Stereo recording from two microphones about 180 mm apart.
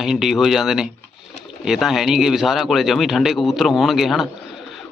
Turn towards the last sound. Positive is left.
turn(degrees=0)  # may be behind; listen again after turning